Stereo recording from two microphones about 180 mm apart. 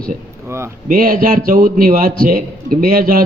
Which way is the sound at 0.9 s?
45° right (ahead or behind).